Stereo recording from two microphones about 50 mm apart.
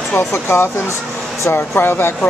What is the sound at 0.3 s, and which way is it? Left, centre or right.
Speech, left.